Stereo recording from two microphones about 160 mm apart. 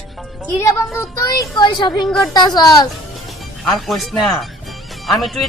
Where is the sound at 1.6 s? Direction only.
30° left (ahead or behind).